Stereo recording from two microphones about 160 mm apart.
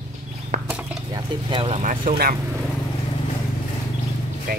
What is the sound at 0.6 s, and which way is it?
Stir, 5° right (ahead or behind).